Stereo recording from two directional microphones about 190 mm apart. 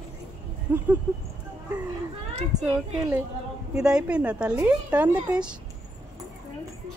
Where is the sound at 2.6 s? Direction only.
15° right (ahead or behind).